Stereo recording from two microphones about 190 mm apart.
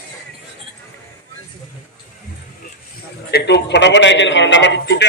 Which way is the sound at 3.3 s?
65° left (ahead or behind).